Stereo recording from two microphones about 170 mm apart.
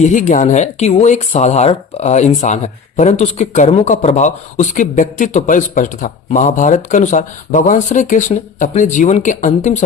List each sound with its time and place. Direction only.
0.0 s speech: 45° left (ahead or behind)